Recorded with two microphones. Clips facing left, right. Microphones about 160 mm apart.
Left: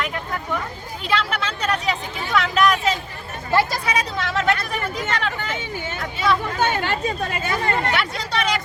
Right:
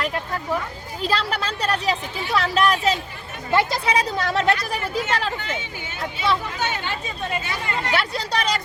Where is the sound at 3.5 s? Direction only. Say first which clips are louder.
Even; 20° right (ahead or behind).